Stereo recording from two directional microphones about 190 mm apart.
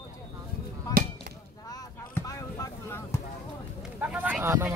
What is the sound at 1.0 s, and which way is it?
Chop, 50° right (ahead or behind).